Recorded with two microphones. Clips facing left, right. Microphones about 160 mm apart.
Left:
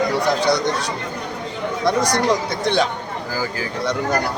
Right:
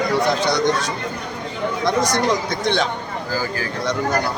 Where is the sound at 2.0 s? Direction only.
35° left (ahead or behind).